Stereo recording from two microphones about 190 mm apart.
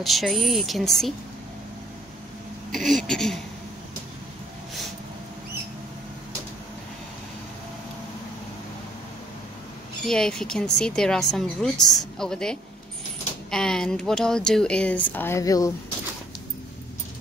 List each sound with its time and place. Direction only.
0.0 s a woman's voice: centre (ahead or behind)
2.7 s a woman's voice: centre (ahead or behind)
10.0 s a woman's voice: 5° left (ahead or behind)